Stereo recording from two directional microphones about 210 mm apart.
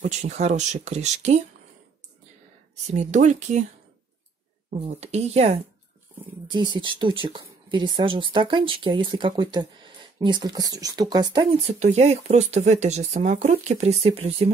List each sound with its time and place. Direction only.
0.0 s speech: 30° right (ahead or behind)
2.7 s speech: 35° right (ahead or behind)
4.6 s speech: 30° right (ahead or behind)